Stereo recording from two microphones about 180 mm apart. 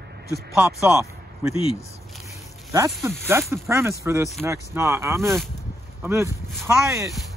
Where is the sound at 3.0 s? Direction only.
15° right (ahead or behind).